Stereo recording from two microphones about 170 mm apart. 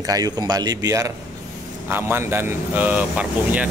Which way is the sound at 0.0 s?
20° right (ahead or behind).